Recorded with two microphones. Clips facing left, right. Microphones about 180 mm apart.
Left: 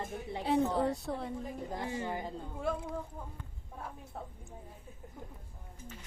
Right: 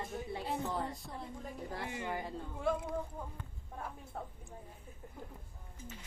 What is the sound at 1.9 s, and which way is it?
Speech, 30° left (ahead or behind).